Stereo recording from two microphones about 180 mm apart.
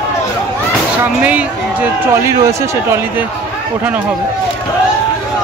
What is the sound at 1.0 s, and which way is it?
Speech, 10° right (ahead or behind).